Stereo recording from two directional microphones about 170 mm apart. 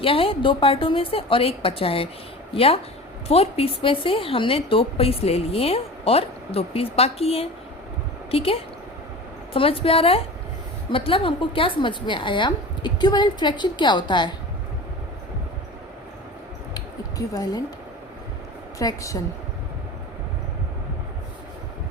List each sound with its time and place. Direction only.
0.0 s a woman's voice: 35° left (ahead or behind)
16.7 s a sound: 20° left (ahead or behind)
18.8 s a woman's voice: 20° left (ahead or behind)